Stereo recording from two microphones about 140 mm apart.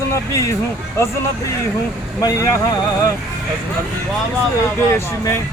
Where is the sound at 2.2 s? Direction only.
25° left (ahead or behind).